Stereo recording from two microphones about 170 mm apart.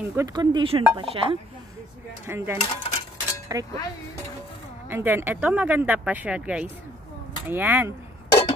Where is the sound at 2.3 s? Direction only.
15° right (ahead or behind).